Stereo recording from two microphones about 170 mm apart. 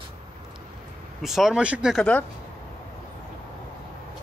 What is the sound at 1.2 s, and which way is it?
Speech, centre (ahead or behind).